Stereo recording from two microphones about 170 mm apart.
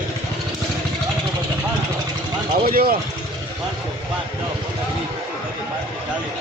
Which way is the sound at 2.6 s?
60° right (ahead or behind).